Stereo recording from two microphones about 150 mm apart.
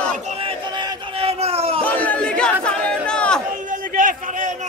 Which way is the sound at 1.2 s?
40° right (ahead or behind).